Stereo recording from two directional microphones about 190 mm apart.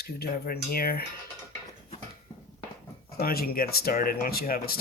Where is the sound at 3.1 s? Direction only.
55° left (ahead or behind).